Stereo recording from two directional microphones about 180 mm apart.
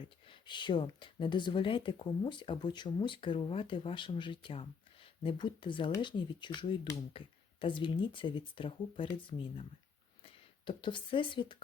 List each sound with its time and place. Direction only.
0.3 s speech: 25° left (ahead or behind)